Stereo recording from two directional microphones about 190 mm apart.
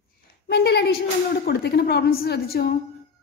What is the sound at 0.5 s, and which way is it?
A woman's voice, 60° left (ahead or behind).